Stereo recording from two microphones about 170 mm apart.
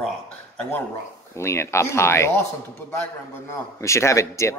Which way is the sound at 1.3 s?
15° left (ahead or behind).